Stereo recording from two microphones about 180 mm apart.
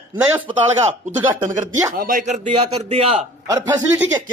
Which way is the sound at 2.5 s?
35° right (ahead or behind).